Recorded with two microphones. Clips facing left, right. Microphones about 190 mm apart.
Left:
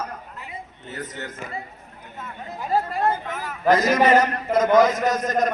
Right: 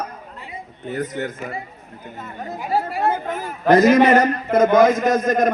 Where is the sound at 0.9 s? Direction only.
55° right (ahead or behind).